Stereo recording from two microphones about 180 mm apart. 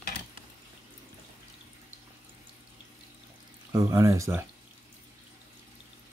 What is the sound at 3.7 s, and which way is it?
Speech, 20° right (ahead or behind).